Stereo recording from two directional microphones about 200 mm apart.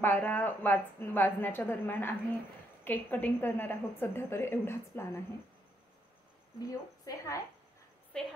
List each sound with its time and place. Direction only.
0.0 s a woman's voice: 10° left (ahead or behind)
6.6 s a woman's voice: 20° left (ahead or behind)
8.1 s a woman's voice: 5° left (ahead or behind)